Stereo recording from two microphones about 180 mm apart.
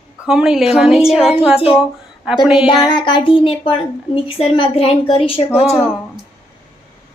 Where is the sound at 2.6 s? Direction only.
25° left (ahead or behind).